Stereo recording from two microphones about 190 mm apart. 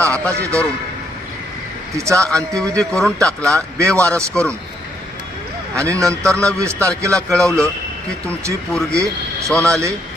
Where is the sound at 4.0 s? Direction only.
15° right (ahead or behind).